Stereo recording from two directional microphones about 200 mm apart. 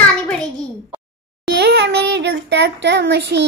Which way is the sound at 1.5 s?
60° right (ahead or behind).